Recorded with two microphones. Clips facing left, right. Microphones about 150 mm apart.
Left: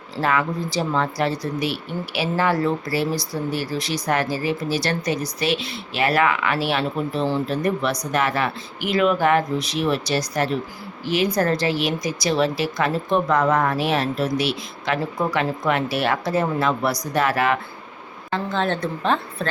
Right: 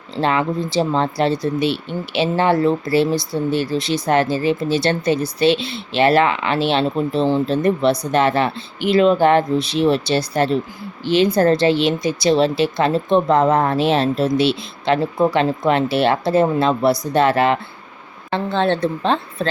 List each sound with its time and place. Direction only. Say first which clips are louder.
0.2 s speech: right 3 dB; 25° right (ahead or behind)